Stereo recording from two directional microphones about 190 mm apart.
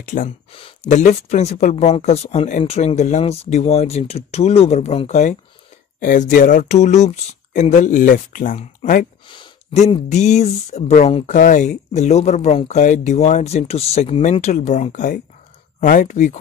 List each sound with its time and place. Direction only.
0.0 s speech: 45° left (ahead or behind)
0.5 s speech: 30° left (ahead or behind); by 9.0 s 45° left (ahead or behind)
9.3 s a sound: 25° left (ahead or behind)
10.1 s speech: 35° left (ahead or behind)